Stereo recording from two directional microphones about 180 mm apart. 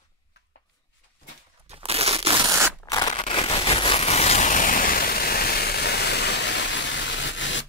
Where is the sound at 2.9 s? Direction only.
25° left (ahead or behind).